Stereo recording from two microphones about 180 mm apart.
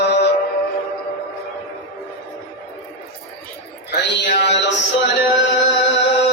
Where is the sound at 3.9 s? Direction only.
70° left (ahead or behind).